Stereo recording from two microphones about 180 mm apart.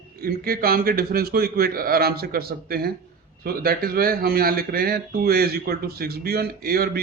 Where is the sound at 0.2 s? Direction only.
55° right (ahead or behind).